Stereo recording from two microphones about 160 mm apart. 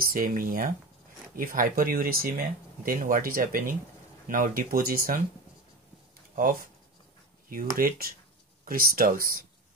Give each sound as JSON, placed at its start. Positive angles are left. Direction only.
{"t": 0.0, "sound": "speech", "side_deg": -65}
{"t": 7.4, "sound": "speech", "side_deg": -60}